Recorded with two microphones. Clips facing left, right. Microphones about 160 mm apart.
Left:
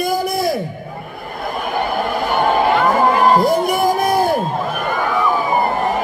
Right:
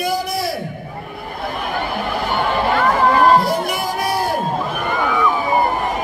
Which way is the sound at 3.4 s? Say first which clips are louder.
Left 6 dB; 50° left (ahead or behind).